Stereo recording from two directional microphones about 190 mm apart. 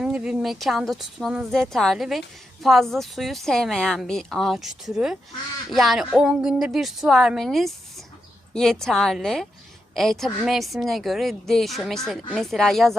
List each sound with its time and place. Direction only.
0.0 s a woman's voice: 5° right (ahead or behind)